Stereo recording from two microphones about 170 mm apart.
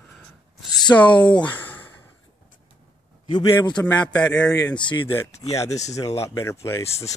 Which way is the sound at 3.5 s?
20° left (ahead or behind).